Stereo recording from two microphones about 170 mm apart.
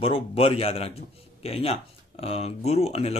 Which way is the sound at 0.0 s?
35° left (ahead or behind).